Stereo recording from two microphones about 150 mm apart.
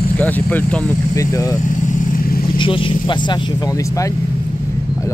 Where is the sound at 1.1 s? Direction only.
20° left (ahead or behind).